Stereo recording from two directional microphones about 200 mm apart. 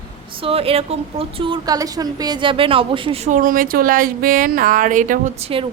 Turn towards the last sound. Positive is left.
turn(degrees=-30)  # may be behind; listen again after turning